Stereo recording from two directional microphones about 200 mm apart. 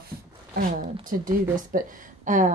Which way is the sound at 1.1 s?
45° right (ahead or behind).